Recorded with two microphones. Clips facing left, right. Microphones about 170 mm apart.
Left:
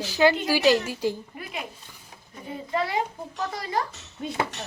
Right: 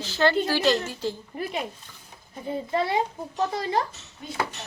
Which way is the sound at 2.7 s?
25° right (ahead or behind).